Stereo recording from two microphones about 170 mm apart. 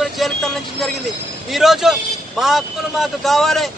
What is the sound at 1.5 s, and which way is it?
A man's voice, centre (ahead or behind).